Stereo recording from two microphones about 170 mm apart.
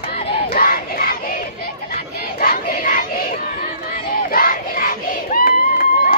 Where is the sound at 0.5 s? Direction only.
55° left (ahead or behind).